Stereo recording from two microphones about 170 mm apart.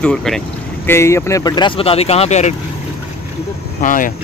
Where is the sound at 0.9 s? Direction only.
15° left (ahead or behind); by 2.5 s 40° left (ahead or behind).